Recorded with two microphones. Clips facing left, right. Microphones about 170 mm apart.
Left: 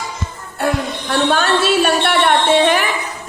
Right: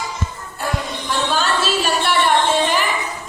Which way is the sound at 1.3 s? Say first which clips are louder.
Left 4 dB; 60° left (ahead or behind).